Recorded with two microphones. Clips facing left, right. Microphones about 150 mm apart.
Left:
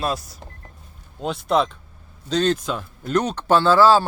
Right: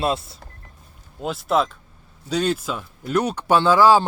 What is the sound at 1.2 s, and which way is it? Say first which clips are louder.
Speech: left 1 dB; 5° right (ahead or behind).